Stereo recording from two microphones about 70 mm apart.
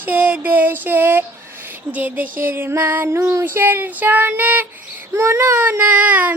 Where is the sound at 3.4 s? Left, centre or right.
Right.